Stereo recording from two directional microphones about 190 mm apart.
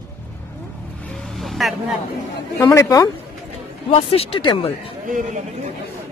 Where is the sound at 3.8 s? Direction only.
30° left (ahead or behind).